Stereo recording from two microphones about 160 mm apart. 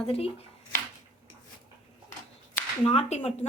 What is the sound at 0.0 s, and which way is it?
Speech, 40° left (ahead or behind).